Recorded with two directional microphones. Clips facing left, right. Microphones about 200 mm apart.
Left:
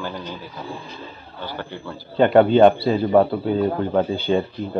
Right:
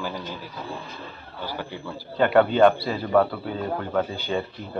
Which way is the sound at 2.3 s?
25° left (ahead or behind).